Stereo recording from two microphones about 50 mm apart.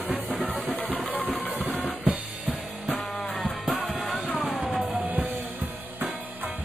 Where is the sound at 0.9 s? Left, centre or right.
Left.